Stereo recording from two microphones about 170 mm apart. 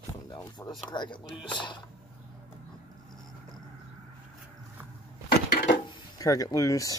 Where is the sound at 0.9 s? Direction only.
25° left (ahead or behind).